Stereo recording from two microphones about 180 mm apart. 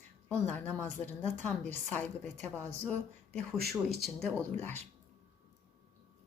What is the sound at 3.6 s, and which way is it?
Speech, 60° right (ahead or behind).